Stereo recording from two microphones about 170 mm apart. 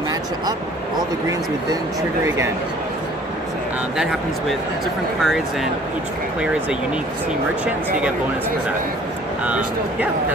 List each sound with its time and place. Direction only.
2.2 s speech: 15° right (ahead or behind)
5.2 s speech: centre (ahead or behind)
9.4 s speech: 10° right (ahead or behind)